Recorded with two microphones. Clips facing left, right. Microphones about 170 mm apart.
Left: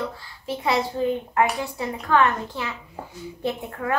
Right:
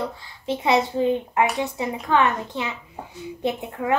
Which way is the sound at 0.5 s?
20° right (ahead or behind).